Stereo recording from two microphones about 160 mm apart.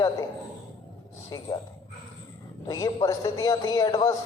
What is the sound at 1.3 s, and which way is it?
Speech, 25° left (ahead or behind).